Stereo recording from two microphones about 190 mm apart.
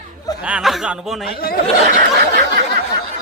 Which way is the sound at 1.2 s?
50° left (ahead or behind).